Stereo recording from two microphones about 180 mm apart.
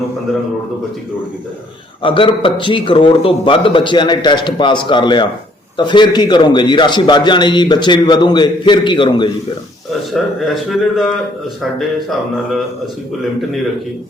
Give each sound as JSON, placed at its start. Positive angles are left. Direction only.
{"t": 2.0, "sound": "a man's voice", "side_deg": 30}
{"t": 10.1, "sound": "a man's voice", "side_deg": 0}